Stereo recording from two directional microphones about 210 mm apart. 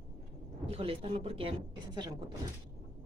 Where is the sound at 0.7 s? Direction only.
25° right (ahead or behind).